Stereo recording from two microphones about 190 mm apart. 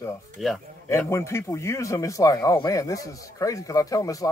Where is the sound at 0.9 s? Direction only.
15° left (ahead or behind).